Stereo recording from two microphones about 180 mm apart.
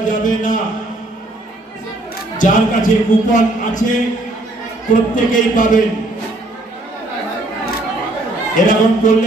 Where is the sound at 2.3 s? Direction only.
45° left (ahead or behind).